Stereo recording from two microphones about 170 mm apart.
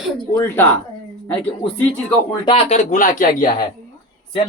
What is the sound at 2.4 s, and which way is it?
Speech, 35° left (ahead or behind).